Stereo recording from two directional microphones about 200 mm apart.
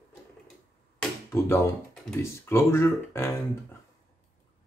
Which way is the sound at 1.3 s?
15° left (ahead or behind).